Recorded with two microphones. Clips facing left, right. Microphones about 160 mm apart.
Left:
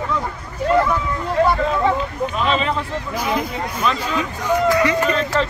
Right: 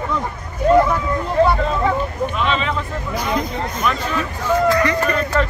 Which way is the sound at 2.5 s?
35° left (ahead or behind).